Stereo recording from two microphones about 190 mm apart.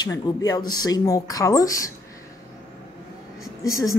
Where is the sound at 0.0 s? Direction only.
20° left (ahead or behind).